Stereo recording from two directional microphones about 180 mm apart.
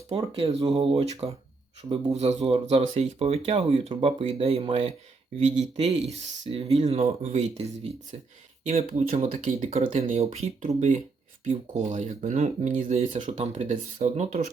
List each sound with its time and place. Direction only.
0.2 s speech: 20° right (ahead or behind)
0.7 s speech: 35° right (ahead or behind)
8.6 s speech: 40° right (ahead or behind)